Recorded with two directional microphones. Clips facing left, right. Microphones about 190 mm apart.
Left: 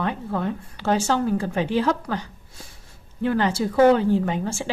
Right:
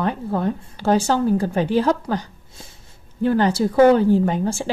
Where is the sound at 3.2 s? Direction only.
35° right (ahead or behind).